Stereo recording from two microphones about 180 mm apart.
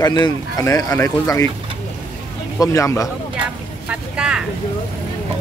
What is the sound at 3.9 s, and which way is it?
Vehicle, 5° right (ahead or behind).